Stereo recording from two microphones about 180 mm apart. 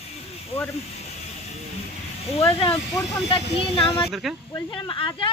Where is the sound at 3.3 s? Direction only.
30° left (ahead or behind).